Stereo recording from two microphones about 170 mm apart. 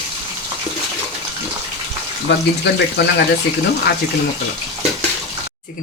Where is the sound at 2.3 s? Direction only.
90° left.